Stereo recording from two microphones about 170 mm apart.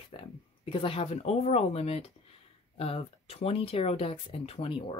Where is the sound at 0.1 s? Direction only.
30° left (ahead or behind).